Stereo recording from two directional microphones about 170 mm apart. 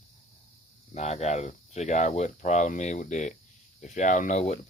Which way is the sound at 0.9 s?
40° left (ahead or behind).